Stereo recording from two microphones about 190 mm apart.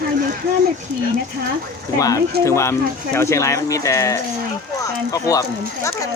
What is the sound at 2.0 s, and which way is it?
Speech, 20° left (ahead or behind).